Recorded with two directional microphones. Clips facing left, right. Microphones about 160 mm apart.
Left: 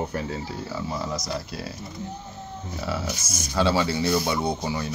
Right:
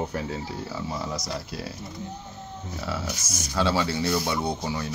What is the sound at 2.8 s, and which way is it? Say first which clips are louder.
Speech: left 2 dB; 20° left (ahead or behind).